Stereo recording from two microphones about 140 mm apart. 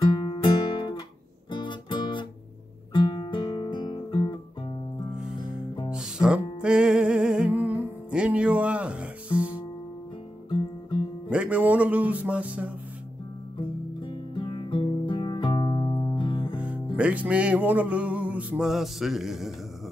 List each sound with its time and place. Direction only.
0.2 s music: 35° left (ahead or behind)
1.5 s guitar: 35° left (ahead or behind)
5.9 s music: 5° right (ahead or behind)
11.2 s music: 10° right (ahead or behind)
14.0 s music: 35° left (ahead or behind)
16.5 s music: 10° right (ahead or behind)